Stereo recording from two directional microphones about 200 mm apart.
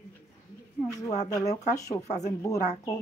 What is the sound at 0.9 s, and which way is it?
Speech, 15° left (ahead or behind).